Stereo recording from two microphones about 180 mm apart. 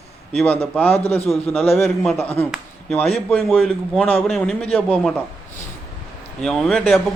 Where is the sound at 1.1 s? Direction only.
35° left (ahead or behind).